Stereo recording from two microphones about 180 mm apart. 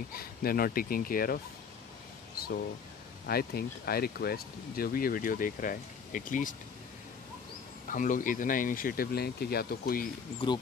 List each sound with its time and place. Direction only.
0.1 s speech: 55° left (ahead or behind)
7.9 s speech: 45° left (ahead or behind)